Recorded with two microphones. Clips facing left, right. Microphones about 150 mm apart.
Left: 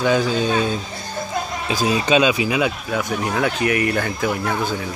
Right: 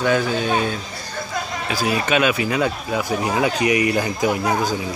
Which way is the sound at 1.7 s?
20° left (ahead or behind).